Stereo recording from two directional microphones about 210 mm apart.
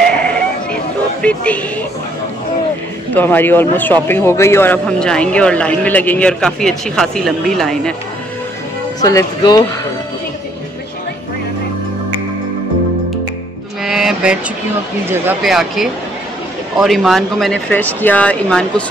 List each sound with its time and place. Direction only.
1.2 s a man's voice: 5° left (ahead or behind)
3.2 s a man's voice: 10° left (ahead or behind)
9.0 s speech: 15° left (ahead or behind)
13.8 s a man's voice: centre (ahead or behind)